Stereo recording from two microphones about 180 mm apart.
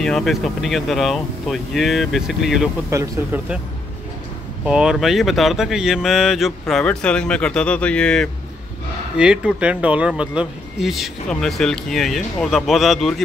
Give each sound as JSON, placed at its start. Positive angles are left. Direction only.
{"t": 0.0, "sound": "speech", "side_deg": 0}
{"t": 2.9, "sound": "speech", "side_deg": -15}
{"t": 4.6, "sound": "speech", "side_deg": -5}